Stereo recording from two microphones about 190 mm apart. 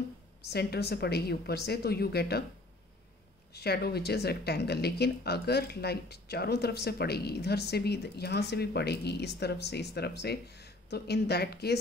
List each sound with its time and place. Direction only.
0.5 s speech: 60° left (ahead or behind)
3.5 s speech: 60° left (ahead or behind)